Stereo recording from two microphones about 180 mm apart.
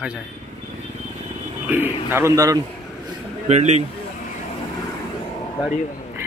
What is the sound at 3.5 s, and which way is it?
Speech, 40° right (ahead or behind).